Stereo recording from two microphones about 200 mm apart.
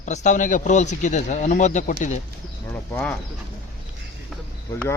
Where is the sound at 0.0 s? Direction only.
35° left (ahead or behind).